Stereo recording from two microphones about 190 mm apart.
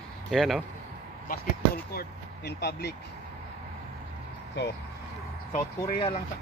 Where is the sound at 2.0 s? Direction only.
60° left (ahead or behind).